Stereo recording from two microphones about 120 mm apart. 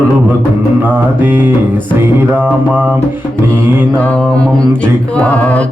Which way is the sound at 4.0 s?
10° left (ahead or behind).